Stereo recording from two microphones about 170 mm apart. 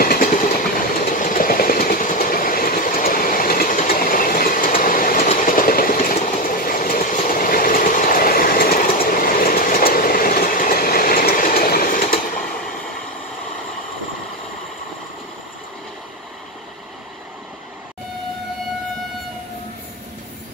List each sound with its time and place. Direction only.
0.0 s train: 55° left (ahead or behind)
5.3 s vehicle: 50° left (ahead or behind)